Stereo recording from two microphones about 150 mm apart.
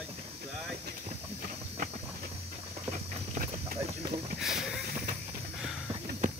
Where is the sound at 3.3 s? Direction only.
75° right (ahead or behind).